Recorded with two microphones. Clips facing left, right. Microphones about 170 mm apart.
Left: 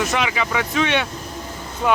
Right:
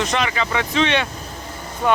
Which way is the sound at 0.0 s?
5° left (ahead or behind).